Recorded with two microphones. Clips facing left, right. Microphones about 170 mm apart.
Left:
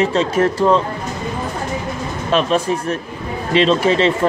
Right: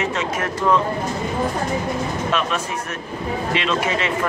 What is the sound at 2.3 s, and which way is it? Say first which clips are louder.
Speech: left 11 dB; 30° left (ahead or behind).